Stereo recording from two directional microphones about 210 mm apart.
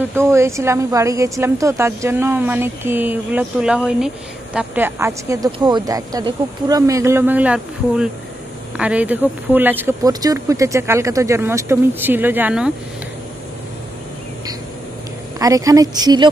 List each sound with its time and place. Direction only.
0.1 s speech: 15° right (ahead or behind)
15.3 s speech: 15° right (ahead or behind)